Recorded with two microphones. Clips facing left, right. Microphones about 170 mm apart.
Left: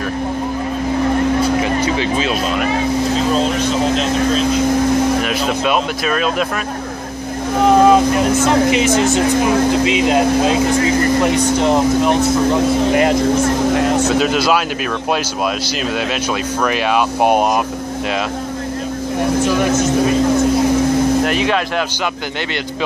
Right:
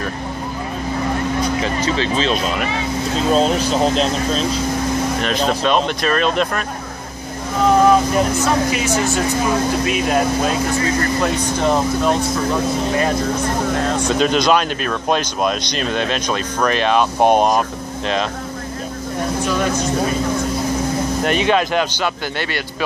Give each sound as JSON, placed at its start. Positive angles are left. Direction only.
{"t": 1.8, "sound": "speech", "side_deg": 10}
{"t": 5.2, "sound": "speech", "side_deg": 10}
{"t": 7.6, "sound": "speech", "side_deg": 20}
{"t": 14.0, "sound": "speech", "side_deg": 5}
{"t": 16.6, "sound": "speech", "side_deg": 10}
{"t": 21.3, "sound": "speech", "side_deg": 0}